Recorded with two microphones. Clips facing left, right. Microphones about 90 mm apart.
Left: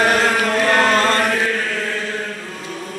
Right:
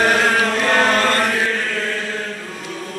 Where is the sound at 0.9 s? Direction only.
20° left (ahead or behind).